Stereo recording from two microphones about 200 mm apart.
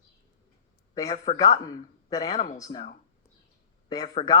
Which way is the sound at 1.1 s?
35° left (ahead or behind).